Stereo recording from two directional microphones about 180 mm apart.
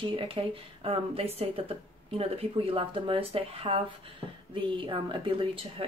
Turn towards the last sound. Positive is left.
turn(degrees=-30)  # may be behind; listen again after turning